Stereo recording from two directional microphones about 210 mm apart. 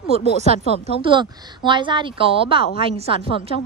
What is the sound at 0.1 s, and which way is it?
Speech, 30° right (ahead or behind).